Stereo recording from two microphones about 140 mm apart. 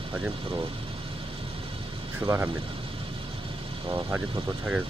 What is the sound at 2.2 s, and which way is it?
Speech, 20° right (ahead or behind).